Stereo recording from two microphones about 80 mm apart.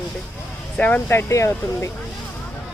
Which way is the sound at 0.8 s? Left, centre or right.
Left.